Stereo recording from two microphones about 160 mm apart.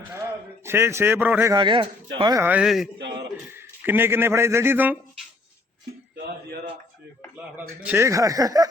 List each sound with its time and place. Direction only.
0.1 s a man's voice: 15° right (ahead or behind)
1.5 s speech: 30° right (ahead or behind)
2.4 s a man's voice: 10° right (ahead or behind)
3.5 s speech: 15° right (ahead or behind)
7.8 s speech: 10° right (ahead or behind)